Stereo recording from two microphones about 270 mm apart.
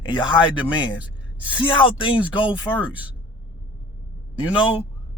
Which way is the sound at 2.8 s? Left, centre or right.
Centre.